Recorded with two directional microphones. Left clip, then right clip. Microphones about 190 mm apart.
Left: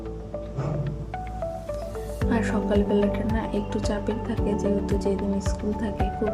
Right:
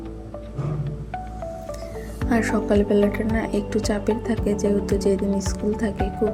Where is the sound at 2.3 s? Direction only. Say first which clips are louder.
Right 4 dB; 15° right (ahead or behind).